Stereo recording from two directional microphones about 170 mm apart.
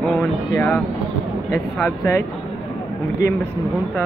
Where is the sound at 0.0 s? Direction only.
5° left (ahead or behind).